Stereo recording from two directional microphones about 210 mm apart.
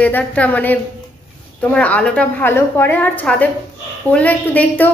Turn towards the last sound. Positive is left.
turn(degrees=10)  # may be behind; listen again after turning